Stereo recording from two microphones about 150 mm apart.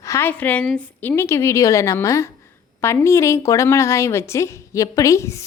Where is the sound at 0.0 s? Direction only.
20° left (ahead or behind).